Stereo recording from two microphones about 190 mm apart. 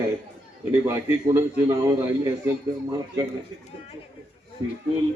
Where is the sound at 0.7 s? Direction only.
15° right (ahead or behind).